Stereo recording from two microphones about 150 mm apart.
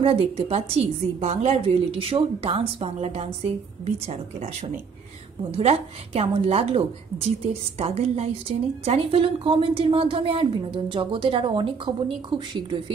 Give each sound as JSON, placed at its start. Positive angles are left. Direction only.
{"t": 0.0, "sound": "a woman's voice", "side_deg": -40}